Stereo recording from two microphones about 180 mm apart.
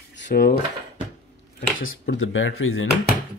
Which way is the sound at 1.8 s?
90° left.